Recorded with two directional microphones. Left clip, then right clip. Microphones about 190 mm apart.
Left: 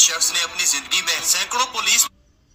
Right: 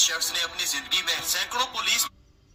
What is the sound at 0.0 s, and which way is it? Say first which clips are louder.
A man's voice: left 6 dB; 30° left (ahead or behind).